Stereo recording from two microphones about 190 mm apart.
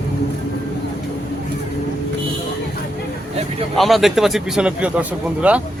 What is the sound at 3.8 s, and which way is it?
A man's voice, centre (ahead or behind).